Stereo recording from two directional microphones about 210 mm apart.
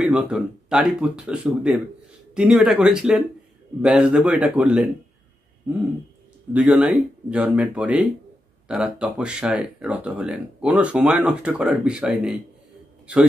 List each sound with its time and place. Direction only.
0.0 s speech: 5° right (ahead or behind)
6.5 s speech: 5° right (ahead or behind)